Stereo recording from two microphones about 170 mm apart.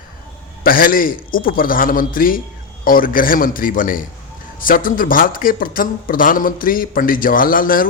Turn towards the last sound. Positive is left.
turn(degrees=55)  # may be behind; listen again after turning